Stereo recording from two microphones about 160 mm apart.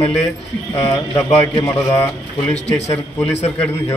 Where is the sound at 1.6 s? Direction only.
20° left (ahead or behind).